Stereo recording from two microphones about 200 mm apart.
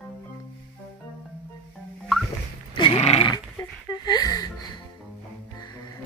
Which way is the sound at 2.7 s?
25° left (ahead or behind).